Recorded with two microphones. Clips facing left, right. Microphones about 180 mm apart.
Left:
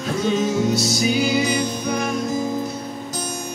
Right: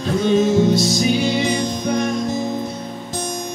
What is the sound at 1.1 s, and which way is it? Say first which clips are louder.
Music: right 1 dB; 25° right (ahead or behind).